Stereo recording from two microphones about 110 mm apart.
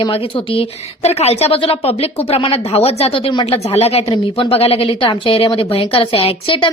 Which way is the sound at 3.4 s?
70° left (ahead or behind).